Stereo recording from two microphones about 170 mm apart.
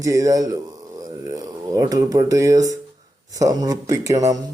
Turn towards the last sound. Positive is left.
turn(degrees=-20)  # may be behind; listen again after turning